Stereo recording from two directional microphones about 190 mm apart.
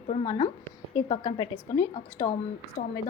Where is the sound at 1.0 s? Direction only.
25° left (ahead or behind).